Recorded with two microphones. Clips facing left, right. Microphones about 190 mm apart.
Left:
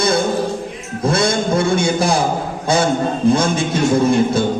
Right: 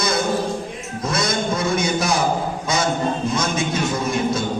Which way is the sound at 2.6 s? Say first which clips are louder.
Left 8 dB; 30° left (ahead or behind).